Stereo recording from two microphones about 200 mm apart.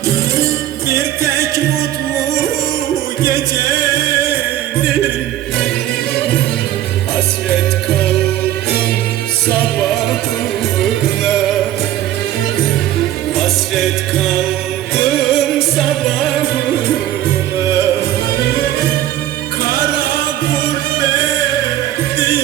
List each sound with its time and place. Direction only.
0.9 s music: 15° right (ahead or behind)
3.2 s music: 15° right (ahead or behind)
9.8 s music: centre (ahead or behind)
13.4 s music: centre (ahead or behind)